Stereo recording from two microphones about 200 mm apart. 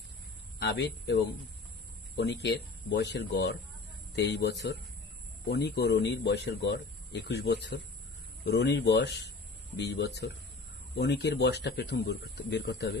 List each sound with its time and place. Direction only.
0.6 s speech: 55° left (ahead or behind)